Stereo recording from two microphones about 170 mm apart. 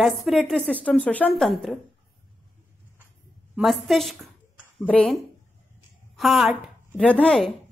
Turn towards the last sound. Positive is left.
turn(degrees=5)  # may be behind; listen again after turning